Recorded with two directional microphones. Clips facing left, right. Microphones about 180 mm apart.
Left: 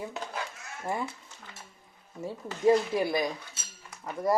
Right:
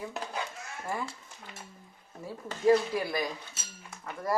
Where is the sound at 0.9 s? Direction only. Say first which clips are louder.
Left 3 dB; 20° left (ahead or behind).